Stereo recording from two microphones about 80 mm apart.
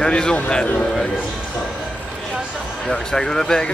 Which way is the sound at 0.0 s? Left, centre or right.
Centre.